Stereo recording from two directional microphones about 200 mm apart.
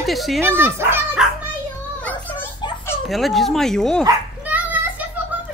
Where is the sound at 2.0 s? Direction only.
10° left (ahead or behind).